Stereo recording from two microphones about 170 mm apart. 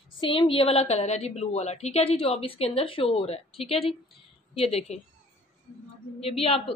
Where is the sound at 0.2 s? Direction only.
30° left (ahead or behind).